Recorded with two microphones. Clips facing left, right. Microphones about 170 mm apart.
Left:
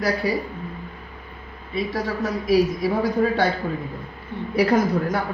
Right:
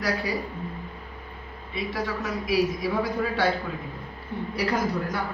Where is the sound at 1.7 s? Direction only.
40° left (ahead or behind).